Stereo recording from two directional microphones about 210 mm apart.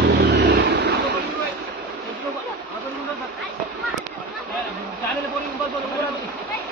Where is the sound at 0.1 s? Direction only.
55° right (ahead or behind).